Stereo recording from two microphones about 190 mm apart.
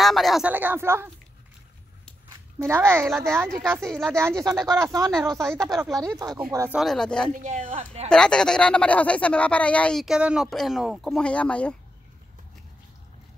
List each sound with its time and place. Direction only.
0.0 s speech: centre (ahead or behind)
2.6 s speech: 15° right (ahead or behind)
3.8 s speech: centre (ahead or behind)
4.2 s speech: 15° right (ahead or behind)
5.4 s speech: 5° left (ahead or behind)
6.0 s speech: 20° right (ahead or behind)
6.8 s speech: 5° left (ahead or behind)
7.3 s speech: 40° right (ahead or behind)
8.1 s speech: 5° left (ahead or behind)